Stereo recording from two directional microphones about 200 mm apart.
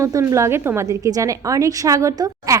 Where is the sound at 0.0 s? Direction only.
15° right (ahead or behind).